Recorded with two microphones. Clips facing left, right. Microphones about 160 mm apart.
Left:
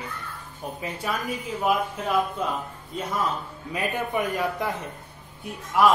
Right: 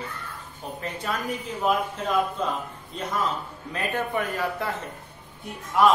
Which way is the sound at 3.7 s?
10° left (ahead or behind).